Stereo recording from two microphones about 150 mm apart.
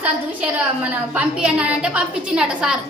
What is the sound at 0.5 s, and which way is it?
A woman's voice, 10° right (ahead or behind).